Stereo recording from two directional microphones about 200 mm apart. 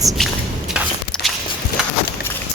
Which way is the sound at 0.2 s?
Centre (ahead or behind).